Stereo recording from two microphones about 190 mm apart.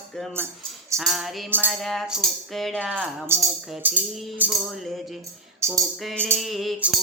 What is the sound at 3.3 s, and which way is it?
Music, 15° right (ahead or behind).